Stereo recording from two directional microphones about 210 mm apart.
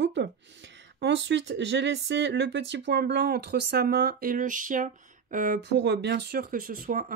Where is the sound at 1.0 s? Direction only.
55° right (ahead or behind).